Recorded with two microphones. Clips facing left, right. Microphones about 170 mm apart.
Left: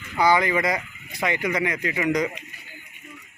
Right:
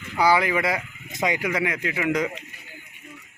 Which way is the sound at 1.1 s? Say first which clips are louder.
Right 1 dB; 20° right (ahead or behind).